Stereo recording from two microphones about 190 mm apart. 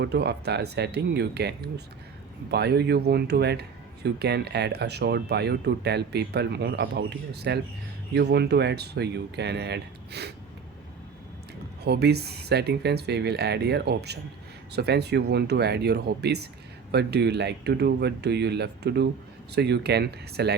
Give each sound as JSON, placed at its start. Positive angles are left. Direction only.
{"t": 0.0, "sound": "speech", "side_deg": -60}
{"t": 11.8, "sound": "speech", "side_deg": -60}